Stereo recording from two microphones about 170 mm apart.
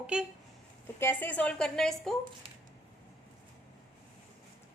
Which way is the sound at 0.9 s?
10° left (ahead or behind).